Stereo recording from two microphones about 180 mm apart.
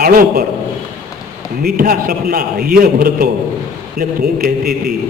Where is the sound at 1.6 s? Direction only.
55° right (ahead or behind).